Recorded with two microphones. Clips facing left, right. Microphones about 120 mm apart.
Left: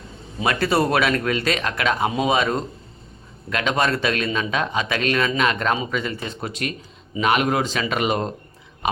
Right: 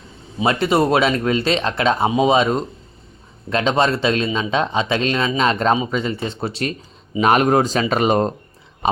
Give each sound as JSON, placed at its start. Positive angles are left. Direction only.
{"t": 0.4, "sound": "speech", "side_deg": -20}